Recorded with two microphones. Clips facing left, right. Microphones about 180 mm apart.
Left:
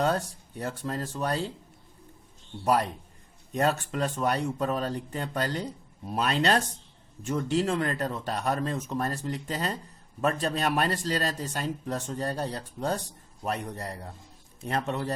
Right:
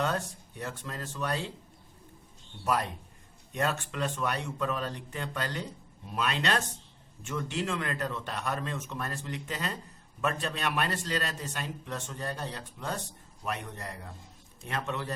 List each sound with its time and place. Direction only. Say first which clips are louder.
0.6 s a man's voice: left 6 dB; 35° left (ahead or behind)
2.6 s a man's voice: left 5 dB; 35° left (ahead or behind)